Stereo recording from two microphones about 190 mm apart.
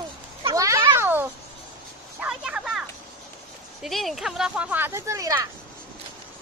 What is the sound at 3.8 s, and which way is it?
Speech, centre (ahead or behind).